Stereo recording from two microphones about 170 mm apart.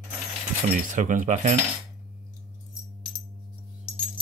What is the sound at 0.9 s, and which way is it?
Speech, 50° right (ahead or behind).